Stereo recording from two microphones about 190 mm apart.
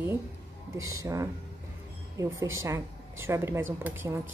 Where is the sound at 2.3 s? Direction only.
90° right.